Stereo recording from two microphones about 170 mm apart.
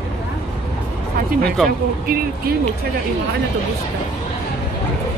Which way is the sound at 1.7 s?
60° right (ahead or behind).